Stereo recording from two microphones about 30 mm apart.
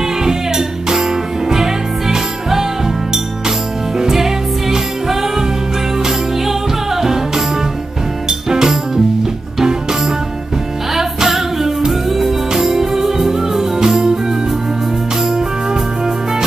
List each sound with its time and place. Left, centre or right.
0.2 s music: right
4.1 s music: centre